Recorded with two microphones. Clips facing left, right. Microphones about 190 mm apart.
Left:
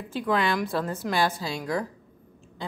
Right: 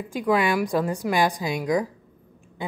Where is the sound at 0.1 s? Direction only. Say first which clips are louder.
Right 3 dB; 15° right (ahead or behind).